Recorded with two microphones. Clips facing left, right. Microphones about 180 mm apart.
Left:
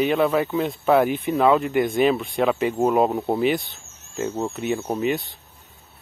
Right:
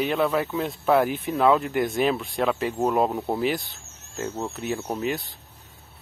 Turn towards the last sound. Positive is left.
turn(degrees=0)  # may be behind; listen again after turning